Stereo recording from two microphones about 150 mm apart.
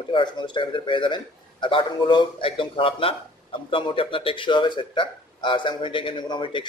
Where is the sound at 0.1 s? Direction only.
30° left (ahead or behind).